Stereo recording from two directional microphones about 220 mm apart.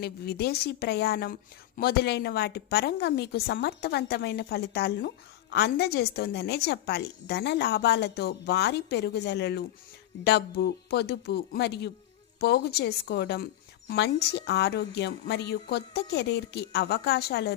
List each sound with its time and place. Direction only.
0.0 s a woman's voice: 45° left (ahead or behind)